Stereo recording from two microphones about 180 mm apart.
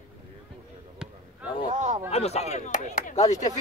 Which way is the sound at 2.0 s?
35° left (ahead or behind).